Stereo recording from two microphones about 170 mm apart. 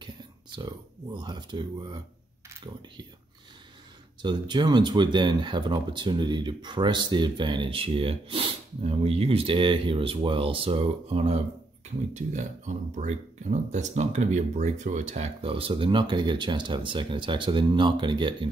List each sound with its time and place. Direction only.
0.6 s speech: 25° right (ahead or behind)
4.2 s speech: 25° right (ahead or behind)